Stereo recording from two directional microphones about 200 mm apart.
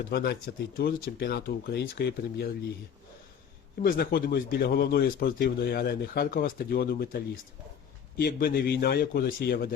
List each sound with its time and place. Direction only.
0.1 s speech: 50° left (ahead or behind)
3.8 s speech: 45° left (ahead or behind)
8.2 s speech: 50° left (ahead or behind)